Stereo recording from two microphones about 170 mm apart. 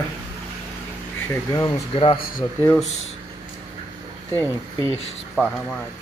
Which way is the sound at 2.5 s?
10° left (ahead or behind).